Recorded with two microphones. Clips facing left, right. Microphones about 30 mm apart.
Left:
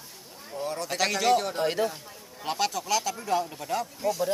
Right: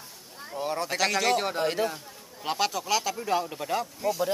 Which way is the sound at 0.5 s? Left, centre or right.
Right.